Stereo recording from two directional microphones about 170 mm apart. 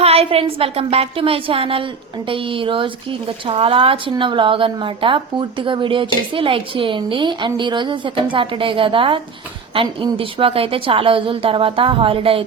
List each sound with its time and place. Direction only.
0.0 s a woman's voice: 35° right (ahead or behind)